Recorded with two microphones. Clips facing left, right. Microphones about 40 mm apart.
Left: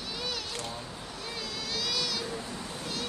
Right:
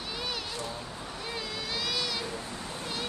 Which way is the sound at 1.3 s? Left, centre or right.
Centre.